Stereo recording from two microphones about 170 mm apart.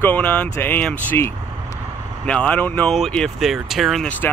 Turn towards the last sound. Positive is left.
turn(degrees=5)  # may be behind; listen again after turning